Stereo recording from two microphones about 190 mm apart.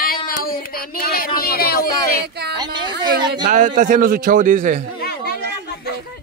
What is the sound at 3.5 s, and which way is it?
A man's voice, 40° right (ahead or behind).